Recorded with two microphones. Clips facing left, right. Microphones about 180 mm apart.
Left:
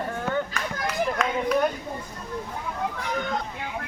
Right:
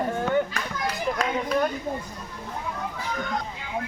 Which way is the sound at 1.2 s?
35° right (ahead or behind).